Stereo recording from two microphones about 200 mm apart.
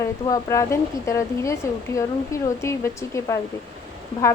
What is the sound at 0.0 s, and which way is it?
A woman's voice, 15° left (ahead or behind).